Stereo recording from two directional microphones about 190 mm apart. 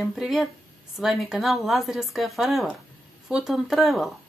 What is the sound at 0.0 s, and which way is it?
Speech, centre (ahead or behind).